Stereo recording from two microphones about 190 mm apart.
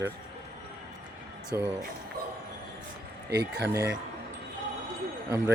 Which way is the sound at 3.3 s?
60° right (ahead or behind).